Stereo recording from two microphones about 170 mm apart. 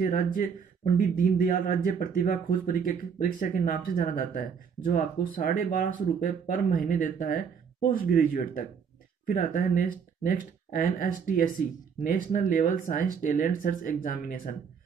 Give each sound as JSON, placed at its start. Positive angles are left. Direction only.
{"t": 0.0, "sound": "speech", "side_deg": 55}